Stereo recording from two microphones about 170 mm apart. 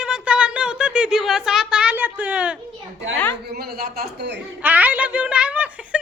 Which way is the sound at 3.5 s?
65° right (ahead or behind).